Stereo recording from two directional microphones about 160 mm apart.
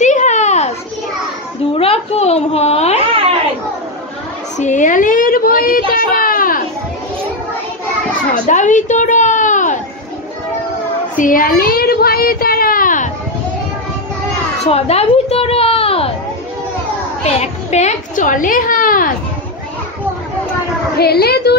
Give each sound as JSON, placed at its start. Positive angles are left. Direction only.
{"t": 0.0, "sound": "children playing", "side_deg": 50}
{"t": 1.8, "sound": "a woman's voice", "side_deg": 40}
{"t": 4.6, "sound": "a woman's voice", "side_deg": 50}
{"t": 8.5, "sound": "a sound", "side_deg": 50}
{"t": 11.1, "sound": "speech", "side_deg": 60}
{"t": 14.6, "sound": "a child's voice", "side_deg": 40}
{"t": 17.2, "sound": "a child's voice", "side_deg": 45}
{"t": 21.0, "sound": "a woman's voice", "side_deg": 80}